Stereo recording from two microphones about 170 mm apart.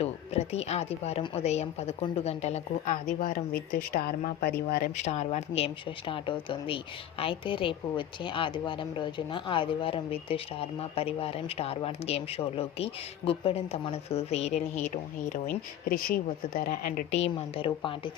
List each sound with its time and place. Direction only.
0.0 s a woman's voice: 40° left (ahead or behind); by 4.9 s 65° left (ahead or behind)
5.0 s a woman's voice: 40° left (ahead or behind)
15.9 s speech: 60° left (ahead or behind)
17.1 s a woman's voice: 35° left (ahead or behind)